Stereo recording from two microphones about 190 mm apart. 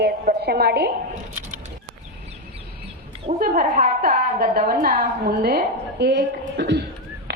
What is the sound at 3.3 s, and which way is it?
A woman's voice, 45° right (ahead or behind).